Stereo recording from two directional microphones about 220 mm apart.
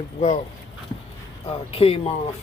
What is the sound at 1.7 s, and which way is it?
Speech, 25° left (ahead or behind).